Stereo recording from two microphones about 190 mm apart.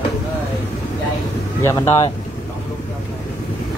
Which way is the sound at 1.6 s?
15° left (ahead or behind).